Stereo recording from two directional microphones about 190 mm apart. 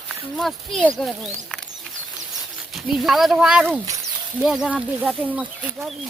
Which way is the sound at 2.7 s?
Centre (ahead or behind).